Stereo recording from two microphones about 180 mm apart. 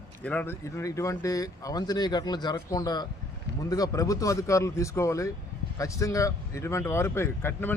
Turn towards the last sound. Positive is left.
turn(degrees=10)  # may be behind; listen again after turning